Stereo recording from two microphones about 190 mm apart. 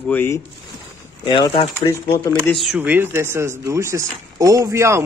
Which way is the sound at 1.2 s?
25° left (ahead or behind).